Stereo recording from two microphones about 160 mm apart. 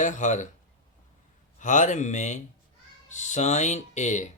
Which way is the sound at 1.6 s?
50° left (ahead or behind).